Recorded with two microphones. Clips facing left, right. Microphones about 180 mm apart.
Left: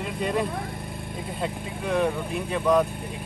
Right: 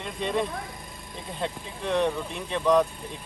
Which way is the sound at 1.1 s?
5° left (ahead or behind).